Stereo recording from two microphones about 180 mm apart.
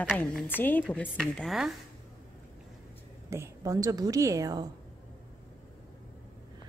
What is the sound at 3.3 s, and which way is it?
A woman's voice, 15° right (ahead or behind).